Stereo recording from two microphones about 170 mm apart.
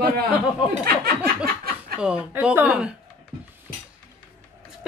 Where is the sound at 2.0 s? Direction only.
5° right (ahead or behind).